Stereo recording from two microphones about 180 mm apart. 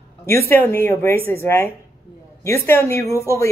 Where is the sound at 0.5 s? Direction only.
10° left (ahead or behind).